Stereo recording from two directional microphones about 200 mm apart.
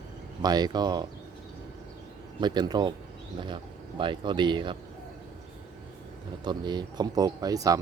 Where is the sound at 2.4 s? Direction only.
20° right (ahead or behind).